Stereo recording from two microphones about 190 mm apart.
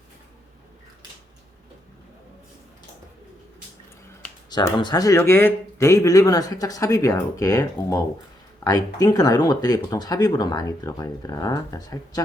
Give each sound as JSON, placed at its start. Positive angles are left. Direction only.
{"t": 4.4, "sound": "speech", "side_deg": 20}